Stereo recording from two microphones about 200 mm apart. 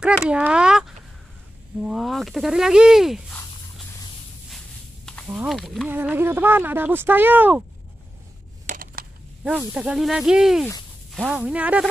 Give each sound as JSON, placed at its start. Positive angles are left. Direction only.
{"t": 0.0, "sound": "speech", "side_deg": -5}
{"t": 5.0, "sound": "speech", "side_deg": 0}
{"t": 5.9, "sound": "speech", "side_deg": -10}
{"t": 8.6, "sound": "a sound", "side_deg": -45}
{"t": 9.4, "sound": "speech", "side_deg": -5}